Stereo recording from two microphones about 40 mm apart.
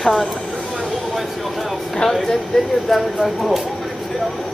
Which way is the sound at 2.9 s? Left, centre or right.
Centre.